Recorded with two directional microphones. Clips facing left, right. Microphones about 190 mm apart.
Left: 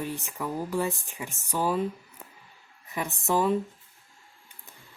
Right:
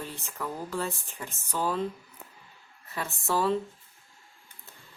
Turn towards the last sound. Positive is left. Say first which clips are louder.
# left 2 dB
turn(degrees=15)  # may be behind; listen again after turning